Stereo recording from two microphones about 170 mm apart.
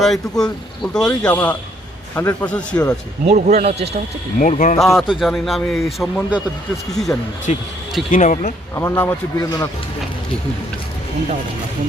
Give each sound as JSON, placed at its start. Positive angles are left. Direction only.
{"t": 0.0, "sound": "a man's voice", "side_deg": 0}
{"t": 3.2, "sound": "speech", "side_deg": -45}
{"t": 4.4, "sound": "speech", "side_deg": 50}
{"t": 4.8, "sound": "a man's voice", "side_deg": 0}
{"t": 7.5, "sound": "speech", "side_deg": 40}
{"t": 8.7, "sound": "speech", "side_deg": 15}